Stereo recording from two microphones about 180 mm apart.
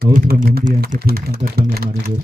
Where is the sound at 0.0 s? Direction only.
55° right (ahead or behind).